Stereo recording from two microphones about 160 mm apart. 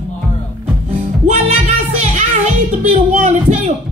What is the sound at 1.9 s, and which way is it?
Music, 45° right (ahead or behind).